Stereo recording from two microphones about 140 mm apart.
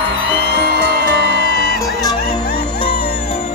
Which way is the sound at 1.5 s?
90° left.